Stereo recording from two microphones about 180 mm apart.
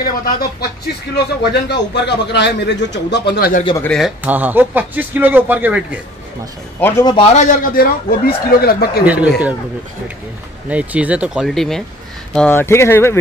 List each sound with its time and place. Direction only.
0.0 s a man's voice: 55° left (ahead or behind)
1.1 s speech: 70° left (ahead or behind)
3.3 s a man's voice: 55° left (ahead or behind)
3.8 s speech: 5° left (ahead or behind)
4.2 s a man's voice: 10° right (ahead or behind)
6.8 s speech: 15° left (ahead or behind)
7.2 s a man's voice: 45° left (ahead or behind); by 9.0 s 60° left (ahead or behind)
9.0 s a man's voice: 10° right (ahead or behind)
10.7 s speech: 5° right (ahead or behind)
12.4 s speech: 10° left (ahead or behind)